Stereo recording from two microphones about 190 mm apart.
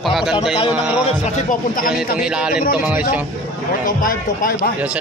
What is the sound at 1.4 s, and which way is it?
Speech, 45° left (ahead or behind).